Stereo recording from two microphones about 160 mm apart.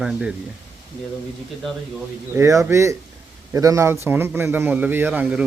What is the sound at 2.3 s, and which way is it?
A man's voice, 20° right (ahead or behind).